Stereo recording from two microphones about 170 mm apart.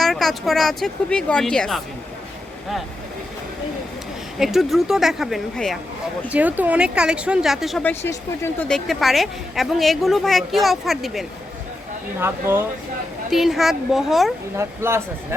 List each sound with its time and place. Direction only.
0.0 s a woman's voice: centre (ahead or behind)
4.4 s a woman's voice: centre (ahead or behind)
7.9 s a woman's voice: 15° left (ahead or behind)
12.2 s speech: 15° right (ahead or behind)
13.3 s a woman's voice: centre (ahead or behind)
14.5 s speech: 15° right (ahead or behind)